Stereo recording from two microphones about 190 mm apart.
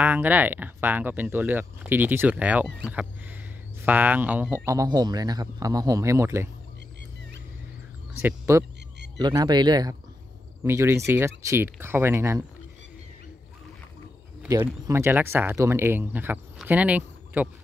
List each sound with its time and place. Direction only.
0.0 s speech: 10° right (ahead or behind)
4.6 s speech: 20° right (ahead or behind)
8.1 s speech: 10° right (ahead or behind)
14.5 s speech: 15° right (ahead or behind)